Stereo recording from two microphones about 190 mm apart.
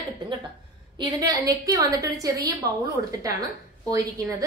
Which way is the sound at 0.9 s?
20° right (ahead or behind).